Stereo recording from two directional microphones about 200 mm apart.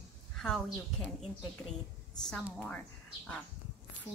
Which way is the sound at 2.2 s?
5° left (ahead or behind).